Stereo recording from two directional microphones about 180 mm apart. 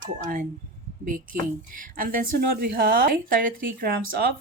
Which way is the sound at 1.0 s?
50° right (ahead or behind).